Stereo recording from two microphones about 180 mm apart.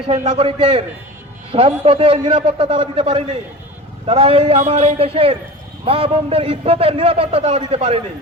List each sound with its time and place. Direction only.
0.1 s a man's voice: 35° right (ahead or behind)